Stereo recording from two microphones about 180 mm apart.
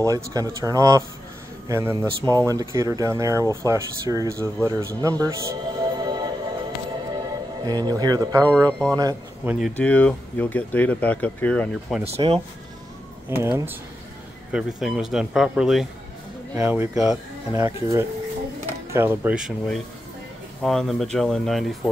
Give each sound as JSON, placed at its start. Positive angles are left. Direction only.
{"t": 0.0, "sound": "speech", "side_deg": -20}
{"t": 7.1, "sound": "music", "side_deg": -20}
{"t": 9.4, "sound": "speech", "side_deg": -10}
{"t": 9.8, "sound": "speech", "side_deg": 10}
{"t": 12.0, "sound": "speech", "side_deg": -30}
{"t": 13.3, "sound": "speech", "side_deg": -15}
{"t": 14.5, "sound": "speech", "side_deg": 0}